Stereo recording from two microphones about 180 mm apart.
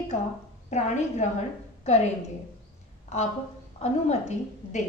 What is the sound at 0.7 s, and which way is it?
Speech, 40° left (ahead or behind).